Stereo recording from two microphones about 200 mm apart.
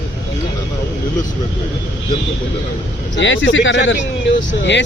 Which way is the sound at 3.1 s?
65° left (ahead or behind).